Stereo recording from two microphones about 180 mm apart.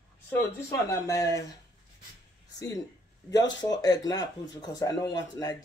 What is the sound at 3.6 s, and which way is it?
Speech, 20° left (ahead or behind).